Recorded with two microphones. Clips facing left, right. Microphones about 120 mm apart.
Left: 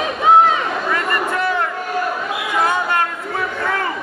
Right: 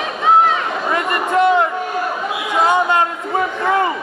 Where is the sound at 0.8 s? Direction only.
20° right (ahead or behind).